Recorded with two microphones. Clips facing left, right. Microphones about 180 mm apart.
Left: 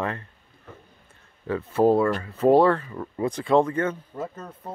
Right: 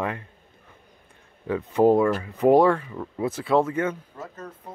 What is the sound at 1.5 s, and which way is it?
Speech, 15° right (ahead or behind).